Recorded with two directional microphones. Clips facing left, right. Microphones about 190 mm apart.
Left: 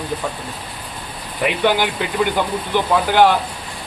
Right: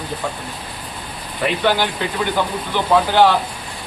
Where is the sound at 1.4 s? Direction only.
15° left (ahead or behind).